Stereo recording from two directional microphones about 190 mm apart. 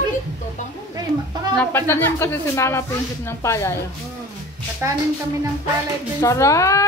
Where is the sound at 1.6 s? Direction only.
10° left (ahead or behind).